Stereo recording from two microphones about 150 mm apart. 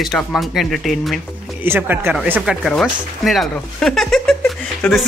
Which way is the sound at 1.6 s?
15° right (ahead or behind).